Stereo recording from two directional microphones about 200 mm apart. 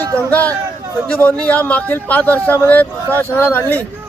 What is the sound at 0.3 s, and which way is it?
A man's voice, 5° left (ahead or behind).